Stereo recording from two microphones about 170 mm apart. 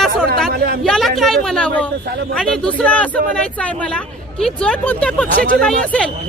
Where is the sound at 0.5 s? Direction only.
70° right (ahead or behind).